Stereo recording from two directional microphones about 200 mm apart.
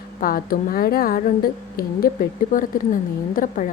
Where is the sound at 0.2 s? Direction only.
45° left (ahead or behind).